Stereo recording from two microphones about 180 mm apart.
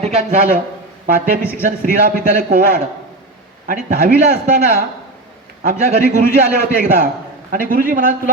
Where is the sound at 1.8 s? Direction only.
50° right (ahead or behind).